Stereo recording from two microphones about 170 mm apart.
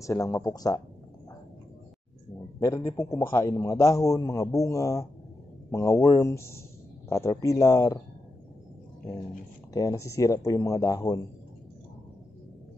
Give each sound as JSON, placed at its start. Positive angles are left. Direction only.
{"t": 0.0, "sound": "a man's voice", "side_deg": 20}
{"t": 2.6, "sound": "a man's voice", "side_deg": 20}
{"t": 9.8, "sound": "a man's voice", "side_deg": 20}